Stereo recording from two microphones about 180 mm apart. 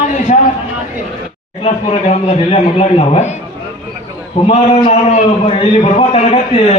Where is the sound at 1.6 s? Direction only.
35° left (ahead or behind).